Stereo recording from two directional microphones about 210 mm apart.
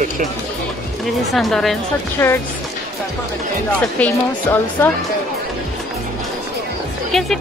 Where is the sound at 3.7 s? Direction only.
10° left (ahead or behind).